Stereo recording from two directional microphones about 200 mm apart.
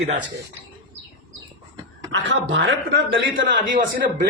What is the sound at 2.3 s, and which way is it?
A man's voice, 70° right (ahead or behind).